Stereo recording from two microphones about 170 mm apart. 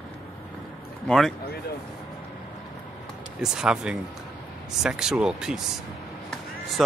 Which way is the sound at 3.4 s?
5° right (ahead or behind).